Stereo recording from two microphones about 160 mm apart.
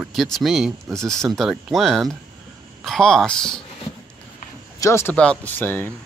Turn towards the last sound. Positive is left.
turn(degrees=10)  # may be behind; listen again after turning